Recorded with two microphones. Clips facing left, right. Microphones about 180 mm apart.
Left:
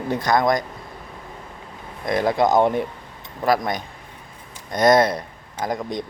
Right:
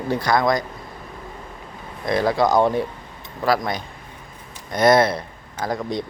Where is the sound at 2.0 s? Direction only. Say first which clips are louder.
Even; 20° left (ahead or behind).